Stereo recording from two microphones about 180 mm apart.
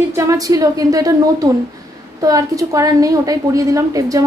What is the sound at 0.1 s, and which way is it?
A woman's voice, 15° right (ahead or behind).